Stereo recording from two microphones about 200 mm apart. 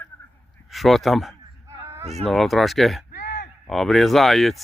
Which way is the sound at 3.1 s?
55° left (ahead or behind).